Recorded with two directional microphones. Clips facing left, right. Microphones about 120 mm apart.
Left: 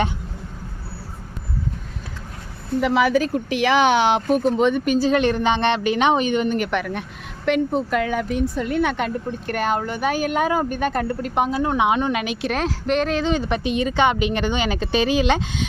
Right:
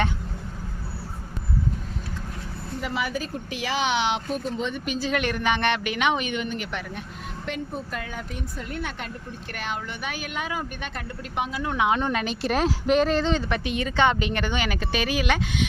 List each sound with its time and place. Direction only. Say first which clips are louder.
2.8 s speech: left 11 dB; 90° left; by 4.9 s 60° left (ahead or behind)
4.9 s a woman's voice: left 8 dB; 35° left (ahead or behind)
6.7 s speech: left 9 dB; 70° left (ahead or behind)
7.4 s speech: left 13 dB; 85° left
9.5 s speech: left 10 dB; 45° left (ahead or behind); by 11.9 s 30° left (ahead or behind)
11.9 s speech: left 3 dB; 10° left (ahead or behind)
13.3 s speech: left 4 dB; 20° left (ahead or behind)